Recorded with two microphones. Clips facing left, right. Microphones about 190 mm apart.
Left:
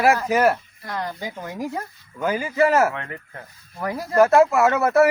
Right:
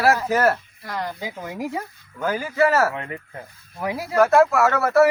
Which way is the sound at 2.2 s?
15° left (ahead or behind).